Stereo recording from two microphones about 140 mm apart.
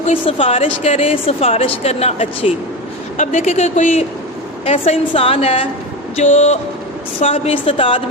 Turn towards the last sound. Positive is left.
turn(degrees=40)  # may be behind; listen again after turning